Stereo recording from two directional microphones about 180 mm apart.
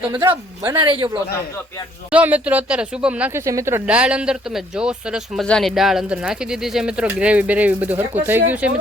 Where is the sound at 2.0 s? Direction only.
10° right (ahead or behind).